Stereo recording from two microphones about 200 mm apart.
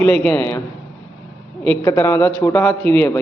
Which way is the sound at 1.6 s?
10° left (ahead or behind).